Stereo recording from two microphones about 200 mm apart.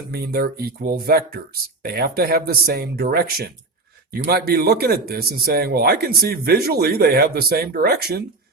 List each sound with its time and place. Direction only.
0.1 s a man's voice: 50° right (ahead or behind)